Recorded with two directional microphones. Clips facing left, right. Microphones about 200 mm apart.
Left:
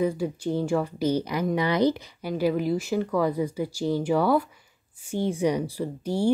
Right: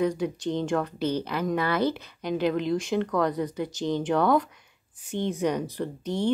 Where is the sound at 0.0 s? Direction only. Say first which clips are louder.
Even; 5° left (ahead or behind).